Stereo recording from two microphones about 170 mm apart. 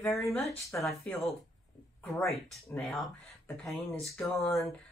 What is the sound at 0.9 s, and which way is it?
Speech, 10° left (ahead or behind).